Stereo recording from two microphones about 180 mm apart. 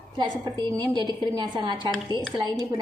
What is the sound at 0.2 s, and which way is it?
A woman's voice, 25° right (ahead or behind).